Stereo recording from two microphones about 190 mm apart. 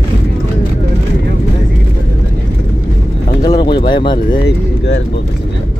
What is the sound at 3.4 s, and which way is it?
Speech, 20° left (ahead or behind).